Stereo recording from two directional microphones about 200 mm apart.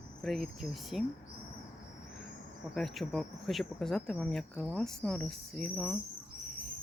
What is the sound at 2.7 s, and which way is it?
Speech, centre (ahead or behind).